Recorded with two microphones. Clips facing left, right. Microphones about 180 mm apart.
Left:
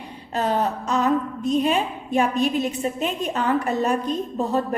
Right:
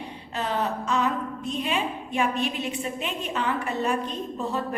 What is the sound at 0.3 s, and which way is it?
A woman's voice, 40° left (ahead or behind).